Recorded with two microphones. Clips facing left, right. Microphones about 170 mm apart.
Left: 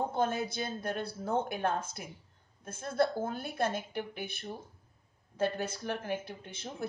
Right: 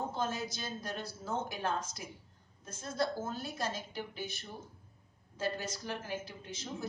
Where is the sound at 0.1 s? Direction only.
55° left (ahead or behind).